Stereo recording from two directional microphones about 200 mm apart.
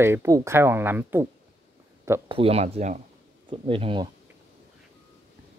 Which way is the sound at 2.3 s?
30° right (ahead or behind).